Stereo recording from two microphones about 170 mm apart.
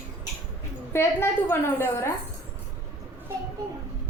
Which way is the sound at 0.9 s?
15° left (ahead or behind).